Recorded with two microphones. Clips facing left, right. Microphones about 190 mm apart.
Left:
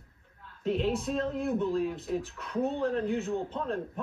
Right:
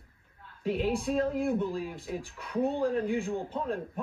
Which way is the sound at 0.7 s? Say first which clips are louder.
Even; centre (ahead or behind).